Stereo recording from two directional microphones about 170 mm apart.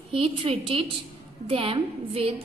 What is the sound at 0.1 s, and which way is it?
A woman's voice, 35° right (ahead or behind).